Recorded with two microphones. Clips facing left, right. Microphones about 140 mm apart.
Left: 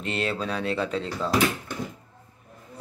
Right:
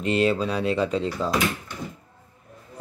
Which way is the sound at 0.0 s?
Centre (ahead or behind).